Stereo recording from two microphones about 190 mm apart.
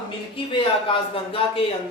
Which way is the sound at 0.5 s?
30° left (ahead or behind).